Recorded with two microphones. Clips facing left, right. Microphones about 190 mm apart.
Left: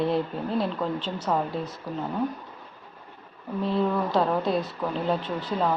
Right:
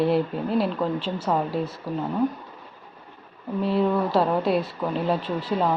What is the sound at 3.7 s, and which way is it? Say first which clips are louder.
Speech: right 3 dB; 5° right (ahead or behind).